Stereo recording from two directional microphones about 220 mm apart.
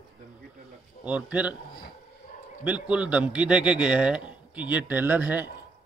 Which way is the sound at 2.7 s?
5° right (ahead or behind).